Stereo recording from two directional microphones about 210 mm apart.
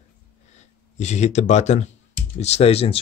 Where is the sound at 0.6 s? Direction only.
35° left (ahead or behind).